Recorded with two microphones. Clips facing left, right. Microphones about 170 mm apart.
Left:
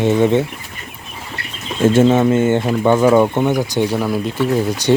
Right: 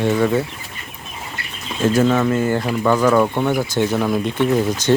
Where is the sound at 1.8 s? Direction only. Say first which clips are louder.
Left 4 dB; 25° left (ahead or behind); by 4.9 s 10° left (ahead or behind).